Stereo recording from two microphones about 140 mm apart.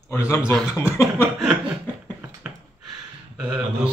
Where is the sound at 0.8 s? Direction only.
20° left (ahead or behind).